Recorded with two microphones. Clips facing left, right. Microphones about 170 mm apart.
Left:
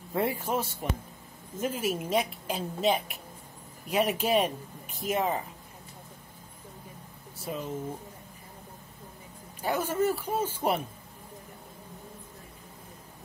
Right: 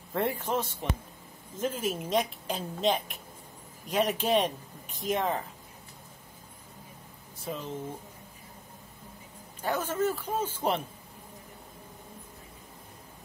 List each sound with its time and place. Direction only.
0.1 s a woman's voice: 10° left (ahead or behind)
7.4 s a woman's voice: 5° left (ahead or behind)
9.6 s a woman's voice: 10° left (ahead or behind)